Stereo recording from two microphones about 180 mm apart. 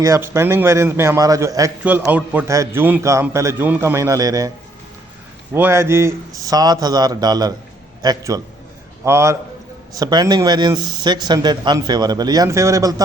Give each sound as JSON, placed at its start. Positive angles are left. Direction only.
{"t": 0.0, "sound": "a man's voice", "side_deg": -15}
{"t": 5.5, "sound": "a man's voice", "side_deg": -15}